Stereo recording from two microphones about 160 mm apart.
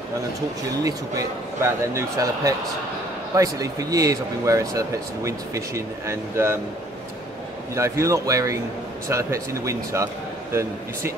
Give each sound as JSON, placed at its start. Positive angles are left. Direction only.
{"t": 0.8, "sound": "speech", "side_deg": -20}
{"t": 7.7, "sound": "speech", "side_deg": -20}